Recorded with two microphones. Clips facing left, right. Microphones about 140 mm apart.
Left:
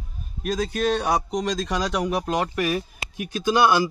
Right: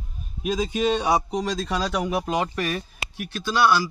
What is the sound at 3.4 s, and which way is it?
Speech, 20° left (ahead or behind).